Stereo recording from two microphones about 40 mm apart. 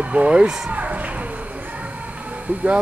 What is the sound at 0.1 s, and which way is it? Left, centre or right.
Speech, right.